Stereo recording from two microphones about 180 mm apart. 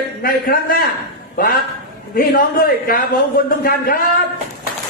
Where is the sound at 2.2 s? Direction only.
50° left (ahead or behind).